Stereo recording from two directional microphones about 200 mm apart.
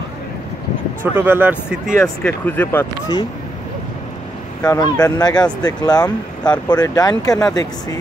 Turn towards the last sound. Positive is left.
turn(degrees=20)  # may be behind; listen again after turning